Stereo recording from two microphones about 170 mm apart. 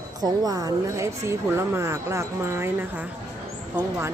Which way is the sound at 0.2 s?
20° right (ahead or behind).